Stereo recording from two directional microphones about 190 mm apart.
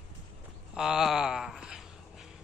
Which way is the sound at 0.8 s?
5° right (ahead or behind).